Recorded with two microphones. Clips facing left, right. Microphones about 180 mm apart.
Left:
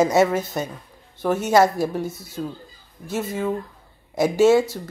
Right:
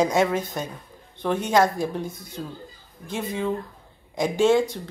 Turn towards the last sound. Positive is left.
turn(degrees=5)  # may be behind; listen again after turning